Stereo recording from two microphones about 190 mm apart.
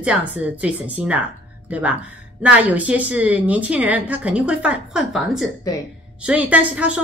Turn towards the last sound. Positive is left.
turn(degrees=-5)  # may be behind; listen again after turning